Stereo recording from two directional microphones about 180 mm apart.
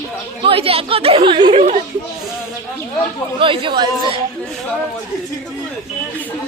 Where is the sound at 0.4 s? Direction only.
30° right (ahead or behind).